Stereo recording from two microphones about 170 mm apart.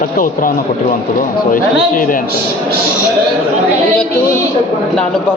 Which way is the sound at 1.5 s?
55° left (ahead or behind).